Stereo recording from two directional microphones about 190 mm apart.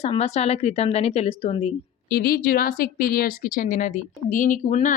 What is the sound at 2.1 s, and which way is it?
Speech, 55° left (ahead or behind).